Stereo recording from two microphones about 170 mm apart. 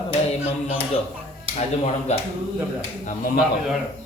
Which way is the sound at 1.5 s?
40° left (ahead or behind).